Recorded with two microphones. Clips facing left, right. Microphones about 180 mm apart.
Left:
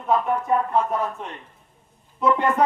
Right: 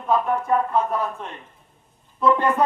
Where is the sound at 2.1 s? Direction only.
20° left (ahead or behind).